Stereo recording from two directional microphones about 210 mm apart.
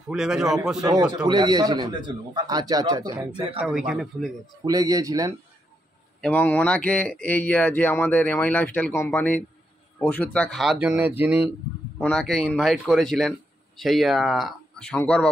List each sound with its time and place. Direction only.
0.1 s speech: centre (ahead or behind)
1.2 s a man's voice: 20° right (ahead or behind)
3.6 s speech: centre (ahead or behind)
4.6 s speech: 15° right (ahead or behind)
6.2 s speech: 5° left (ahead or behind); by 11.5 s 10° right (ahead or behind)
12.0 s speech: 5° left (ahead or behind)